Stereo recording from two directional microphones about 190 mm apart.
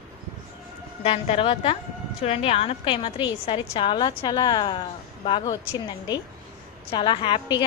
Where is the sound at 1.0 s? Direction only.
30° left (ahead or behind).